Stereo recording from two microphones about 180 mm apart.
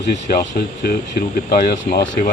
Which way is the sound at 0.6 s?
60° left (ahead or behind).